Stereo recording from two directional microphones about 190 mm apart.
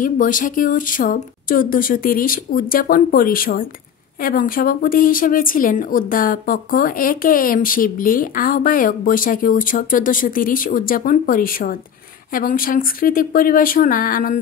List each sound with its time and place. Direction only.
0.0 s a woman's voice: 45° left (ahead or behind)